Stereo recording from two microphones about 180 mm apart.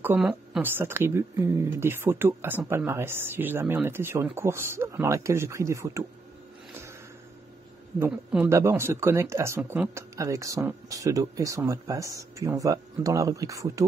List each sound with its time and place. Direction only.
0.0 s speech: 5° right (ahead or behind)
8.0 s speech: 10° right (ahead or behind)